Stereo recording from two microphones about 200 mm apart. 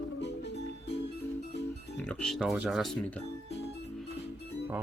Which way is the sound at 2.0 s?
5° left (ahead or behind).